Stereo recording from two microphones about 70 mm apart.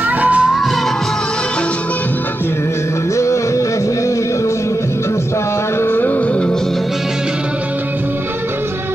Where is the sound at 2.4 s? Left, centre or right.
Left; by 7.0 s centre.